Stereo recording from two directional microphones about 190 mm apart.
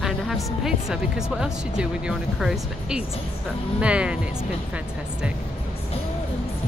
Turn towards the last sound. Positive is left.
turn(degrees=-5)  # may be behind; listen again after turning